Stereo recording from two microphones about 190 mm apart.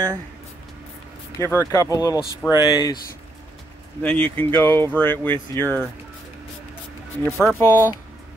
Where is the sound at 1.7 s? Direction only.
15° left (ahead or behind).